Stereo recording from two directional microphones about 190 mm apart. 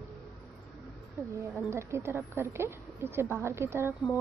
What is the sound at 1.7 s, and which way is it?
A woman's voice, 15° right (ahead or behind).